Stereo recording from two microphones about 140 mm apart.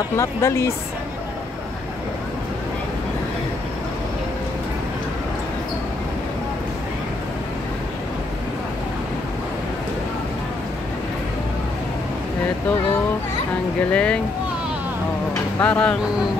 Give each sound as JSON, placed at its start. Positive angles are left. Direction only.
{"t": 0.1, "sound": "speech", "side_deg": 20}
{"t": 13.9, "sound": "speech", "side_deg": 5}
{"t": 15.6, "sound": "speech", "side_deg": 10}